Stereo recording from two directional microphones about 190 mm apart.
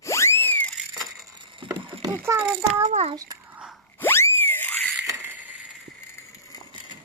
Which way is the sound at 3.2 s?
15° right (ahead or behind).